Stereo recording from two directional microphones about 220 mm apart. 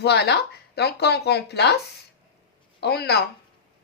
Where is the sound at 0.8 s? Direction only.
50° left (ahead or behind).